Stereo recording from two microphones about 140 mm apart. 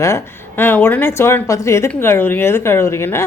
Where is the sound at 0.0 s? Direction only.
15° left (ahead or behind).